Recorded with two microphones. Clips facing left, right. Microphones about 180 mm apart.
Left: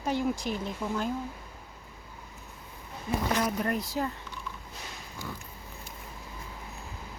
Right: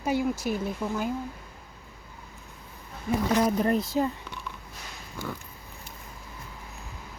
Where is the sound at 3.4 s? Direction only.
30° right (ahead or behind).